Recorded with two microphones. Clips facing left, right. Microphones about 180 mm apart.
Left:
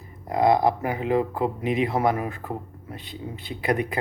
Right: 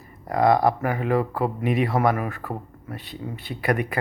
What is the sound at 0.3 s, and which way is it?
Speech, 20° left (ahead or behind).